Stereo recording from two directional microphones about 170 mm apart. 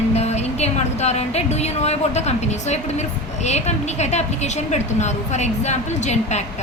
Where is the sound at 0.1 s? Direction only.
40° left (ahead or behind).